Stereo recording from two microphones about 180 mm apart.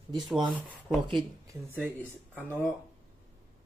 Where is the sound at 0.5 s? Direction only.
Centre (ahead or behind).